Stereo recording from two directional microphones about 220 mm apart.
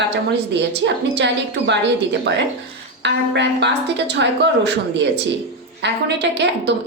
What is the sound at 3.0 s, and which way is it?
A woman's voice, 50° right (ahead or behind).